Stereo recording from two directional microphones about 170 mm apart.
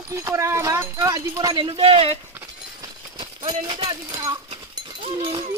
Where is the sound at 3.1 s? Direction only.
25° right (ahead or behind).